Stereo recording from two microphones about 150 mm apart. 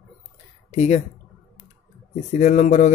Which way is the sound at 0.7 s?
50° left (ahead or behind).